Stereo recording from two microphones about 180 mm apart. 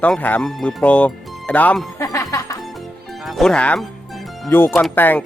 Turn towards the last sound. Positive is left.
turn(degrees=10)  # may be behind; listen again after turning